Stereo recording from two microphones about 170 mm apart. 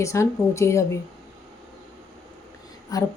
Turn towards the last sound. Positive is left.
turn(degrees=20)  # may be behind; listen again after turning